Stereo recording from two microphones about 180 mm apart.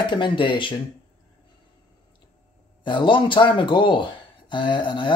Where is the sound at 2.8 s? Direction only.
25° left (ahead or behind).